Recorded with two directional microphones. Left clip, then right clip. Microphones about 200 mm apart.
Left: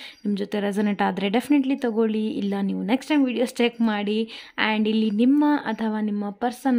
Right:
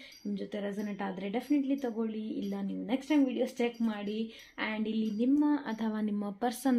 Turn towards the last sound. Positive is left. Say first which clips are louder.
# left 7 dB
turn(degrees=25)  # may be behind; listen again after turning